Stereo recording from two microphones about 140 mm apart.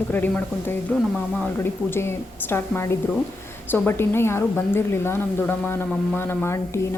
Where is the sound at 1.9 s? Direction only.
15° left (ahead or behind).